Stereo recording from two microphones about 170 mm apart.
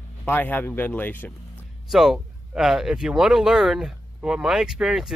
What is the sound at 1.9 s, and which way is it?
Speech, centre (ahead or behind).